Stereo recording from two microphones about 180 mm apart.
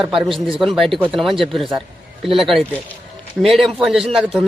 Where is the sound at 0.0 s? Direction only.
Centre (ahead or behind).